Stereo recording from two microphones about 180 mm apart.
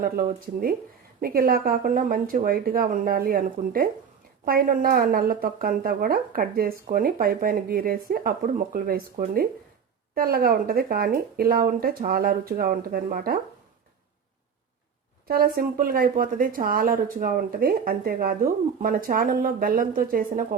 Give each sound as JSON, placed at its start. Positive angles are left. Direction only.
{"t": 0.0, "sound": "speech", "side_deg": -55}
{"t": 15.3, "sound": "speech", "side_deg": -55}